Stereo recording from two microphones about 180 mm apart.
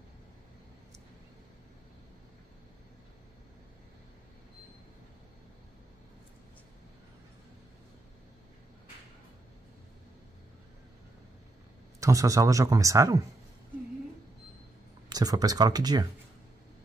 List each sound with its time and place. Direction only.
12.0 s speech: 20° right (ahead or behind)
15.0 s speech: 20° right (ahead or behind)